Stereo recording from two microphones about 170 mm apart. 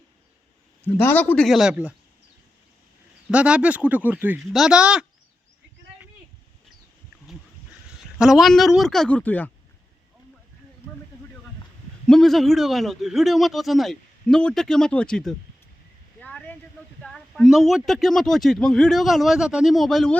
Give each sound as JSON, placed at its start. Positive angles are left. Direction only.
{"t": 0.9, "sound": "a man's voice", "side_deg": 10}
{"t": 1.5, "sound": "speech", "side_deg": -5}
{"t": 3.2, "sound": "speech", "side_deg": -5}
{"t": 8.2, "sound": "speech", "side_deg": 0}
{"t": 12.0, "sound": "speech", "side_deg": 5}
{"t": 16.2, "sound": "a sound", "side_deg": 10}
{"t": 17.0, "sound": "speech", "side_deg": 5}